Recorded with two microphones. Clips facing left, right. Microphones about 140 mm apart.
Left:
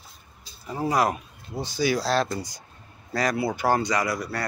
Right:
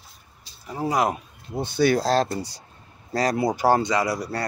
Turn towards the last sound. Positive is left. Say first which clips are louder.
# right 2 dB
turn(degrees=-35)  # may be behind; listen again after turning